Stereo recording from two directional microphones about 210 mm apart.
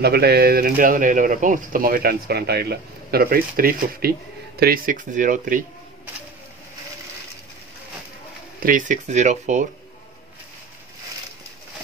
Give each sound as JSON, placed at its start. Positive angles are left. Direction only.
{"t": 0.0, "sound": "speech", "side_deg": -50}
{"t": 8.6, "sound": "speech", "side_deg": -40}